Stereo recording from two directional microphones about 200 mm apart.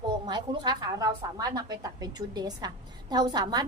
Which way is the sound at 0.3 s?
20° right (ahead or behind).